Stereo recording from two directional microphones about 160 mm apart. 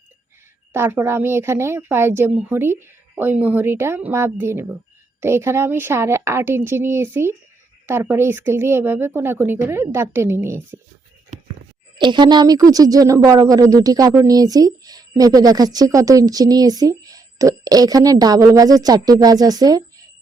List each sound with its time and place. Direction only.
0.7 s speech: 15° right (ahead or behind)
11.3 s a sound: 50° right (ahead or behind)
11.9 s speech: 30° right (ahead or behind)